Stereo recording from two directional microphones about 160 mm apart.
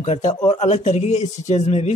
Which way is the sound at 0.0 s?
45° left (ahead or behind).